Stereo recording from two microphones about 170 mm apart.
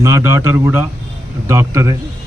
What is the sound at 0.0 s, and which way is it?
A man's voice, 15° right (ahead or behind).